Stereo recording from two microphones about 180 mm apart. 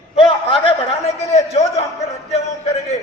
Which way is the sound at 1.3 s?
35° left (ahead or behind).